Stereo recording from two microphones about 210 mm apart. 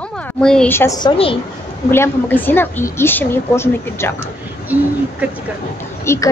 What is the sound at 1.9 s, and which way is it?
A woman's voice, 10° left (ahead or behind).